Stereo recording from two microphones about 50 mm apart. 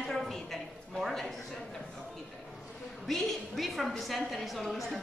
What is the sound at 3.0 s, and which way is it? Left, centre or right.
A woman's voice, centre.